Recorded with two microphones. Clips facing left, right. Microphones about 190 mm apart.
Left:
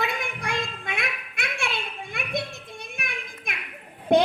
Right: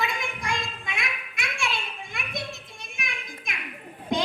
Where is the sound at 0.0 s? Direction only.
60° left (ahead or behind).